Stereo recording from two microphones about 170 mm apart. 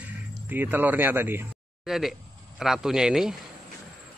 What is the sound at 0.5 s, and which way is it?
Speech, 10° right (ahead or behind).